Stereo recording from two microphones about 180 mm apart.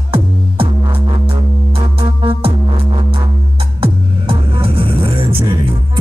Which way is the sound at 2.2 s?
30° right (ahead or behind).